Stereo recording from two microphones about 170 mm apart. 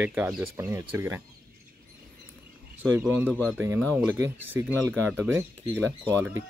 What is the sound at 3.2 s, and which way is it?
Speech, 10° left (ahead or behind).